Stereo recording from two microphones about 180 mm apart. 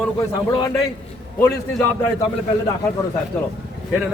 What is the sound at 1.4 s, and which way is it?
Speech, 10° left (ahead or behind).